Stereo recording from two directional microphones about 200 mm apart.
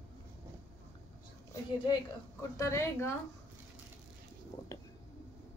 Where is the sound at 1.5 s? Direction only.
20° left (ahead or behind).